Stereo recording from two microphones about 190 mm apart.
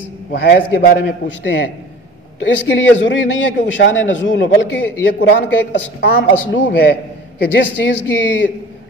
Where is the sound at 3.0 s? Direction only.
75° left (ahead or behind).